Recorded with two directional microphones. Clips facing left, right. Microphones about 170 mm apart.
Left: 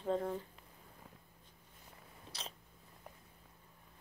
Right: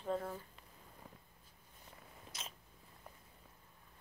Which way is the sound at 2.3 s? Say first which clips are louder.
Left 2 dB; 35° left (ahead or behind).